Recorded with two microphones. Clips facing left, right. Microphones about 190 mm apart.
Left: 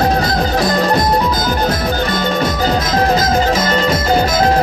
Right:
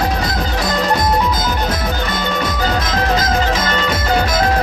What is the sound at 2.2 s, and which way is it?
Music, 40° left (ahead or behind).